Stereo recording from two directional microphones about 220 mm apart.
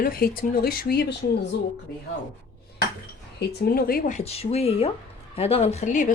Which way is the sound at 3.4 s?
45° left (ahead or behind).